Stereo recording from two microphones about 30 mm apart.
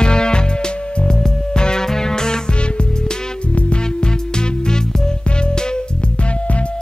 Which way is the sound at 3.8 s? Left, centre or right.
Left.